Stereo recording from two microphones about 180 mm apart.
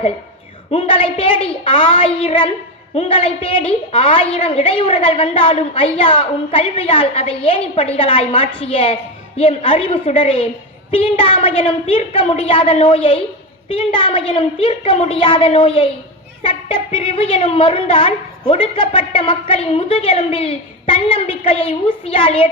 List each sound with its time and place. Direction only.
0.7 s a woman's voice: 30° left (ahead or behind)